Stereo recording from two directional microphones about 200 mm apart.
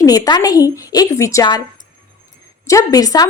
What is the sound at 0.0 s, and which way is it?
A woman's voice, 20° left (ahead or behind).